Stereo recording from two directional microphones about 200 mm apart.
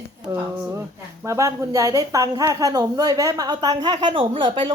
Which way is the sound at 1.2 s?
15° right (ahead or behind).